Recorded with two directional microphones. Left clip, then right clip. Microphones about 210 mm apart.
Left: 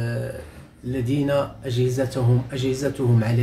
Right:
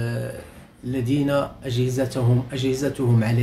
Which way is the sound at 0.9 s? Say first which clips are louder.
Even; 15° right (ahead or behind).